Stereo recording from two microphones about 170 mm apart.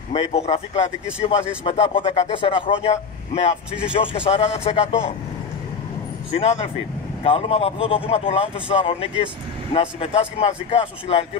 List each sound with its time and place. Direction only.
0.1 s speech: 40° left (ahead or behind)
1.2 s speech: 30° left (ahead or behind)
6.3 s speech: 40° left (ahead or behind)